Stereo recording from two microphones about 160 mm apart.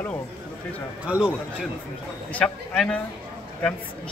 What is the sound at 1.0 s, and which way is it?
Speech, 5° right (ahead or behind).